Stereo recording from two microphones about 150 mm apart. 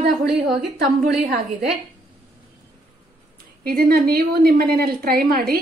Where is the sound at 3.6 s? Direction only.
90° right.